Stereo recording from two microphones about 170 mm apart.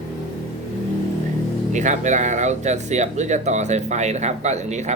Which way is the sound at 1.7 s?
45° right (ahead or behind).